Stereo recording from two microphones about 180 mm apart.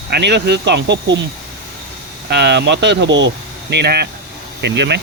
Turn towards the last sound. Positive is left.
turn(degrees=-75)  # may be behind; listen again after turning